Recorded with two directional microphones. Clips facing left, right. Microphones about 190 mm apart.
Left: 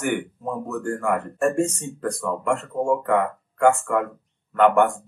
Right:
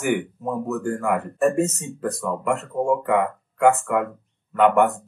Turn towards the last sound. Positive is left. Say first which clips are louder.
# even
turn(degrees=-5)  # may be behind; listen again after turning